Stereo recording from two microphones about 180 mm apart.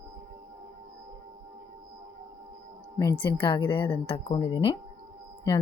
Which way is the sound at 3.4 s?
25° left (ahead or behind).